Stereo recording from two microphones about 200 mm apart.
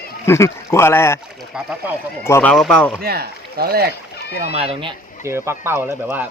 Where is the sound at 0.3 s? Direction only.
15° left (ahead or behind).